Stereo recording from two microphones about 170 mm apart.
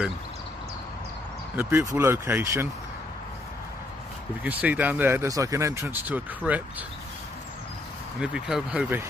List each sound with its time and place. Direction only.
1.6 s speech: 15° right (ahead or behind)
4.4 s speech: 10° right (ahead or behind)
8.2 s speech: 5° right (ahead or behind)